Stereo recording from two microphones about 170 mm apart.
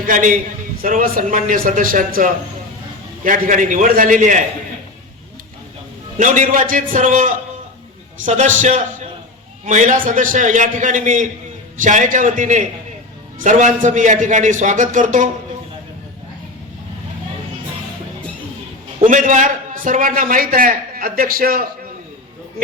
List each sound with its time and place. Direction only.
0.0 s a man's voice: 50° right (ahead or behind)
6.1 s a man's voice: 50° right (ahead or behind)
19.0 s a man's voice: 50° right (ahead or behind)